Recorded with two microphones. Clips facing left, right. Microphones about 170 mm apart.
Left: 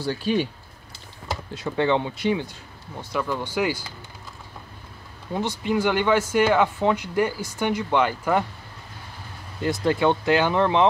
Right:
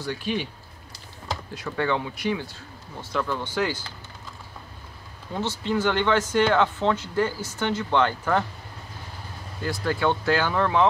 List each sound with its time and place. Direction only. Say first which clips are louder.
0.0 s speech: left 5 dB; 35° left (ahead or behind)
1.5 s speech: left 4 dB; 25° left (ahead or behind)
3.0 s speech: left 1 dB; 10° left (ahead or behind)
5.3 s speech: left 2 dB; 15° left (ahead or behind)
9.6 s speech: left 4 dB; 20° left (ahead or behind)